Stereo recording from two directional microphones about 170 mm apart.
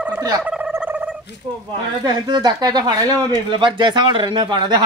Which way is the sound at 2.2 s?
25° right (ahead or behind).